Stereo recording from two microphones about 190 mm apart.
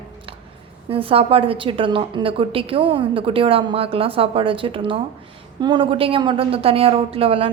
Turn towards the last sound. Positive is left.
turn(degrees=-30)  # may be behind; listen again after turning